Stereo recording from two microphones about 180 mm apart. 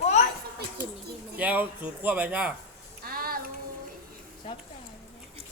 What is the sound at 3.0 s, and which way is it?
Child singing, 55° right (ahead or behind).